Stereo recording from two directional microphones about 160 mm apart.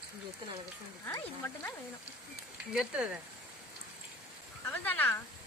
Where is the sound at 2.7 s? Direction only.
5° right (ahead or behind).